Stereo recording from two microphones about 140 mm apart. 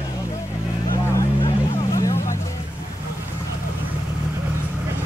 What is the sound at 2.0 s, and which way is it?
Vehicle, 25° left (ahead or behind).